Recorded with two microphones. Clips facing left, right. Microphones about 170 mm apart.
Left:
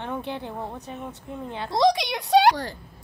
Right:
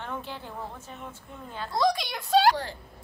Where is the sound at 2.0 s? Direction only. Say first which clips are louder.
Left 4 dB; 20° left (ahead or behind).